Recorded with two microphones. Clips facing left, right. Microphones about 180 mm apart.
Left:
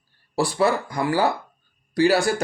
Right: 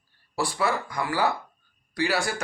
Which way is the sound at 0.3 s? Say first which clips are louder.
Left 6 dB; 30° left (ahead or behind).